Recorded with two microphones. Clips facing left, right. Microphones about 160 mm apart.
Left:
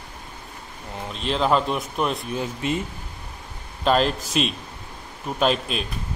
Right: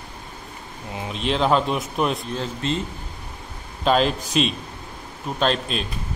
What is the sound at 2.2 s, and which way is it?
Speech, 10° left (ahead or behind).